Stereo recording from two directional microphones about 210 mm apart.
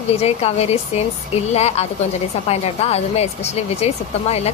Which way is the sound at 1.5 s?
30° left (ahead or behind).